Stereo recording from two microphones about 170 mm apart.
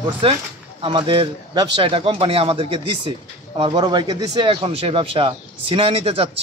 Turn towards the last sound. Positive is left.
turn(degrees=-35)  # may be behind; listen again after turning